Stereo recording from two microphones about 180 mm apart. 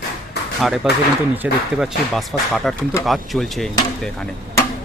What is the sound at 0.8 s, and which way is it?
Speech, centre (ahead or behind).